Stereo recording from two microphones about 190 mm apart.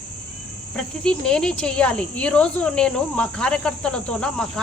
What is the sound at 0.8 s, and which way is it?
Speech, 5° left (ahead or behind).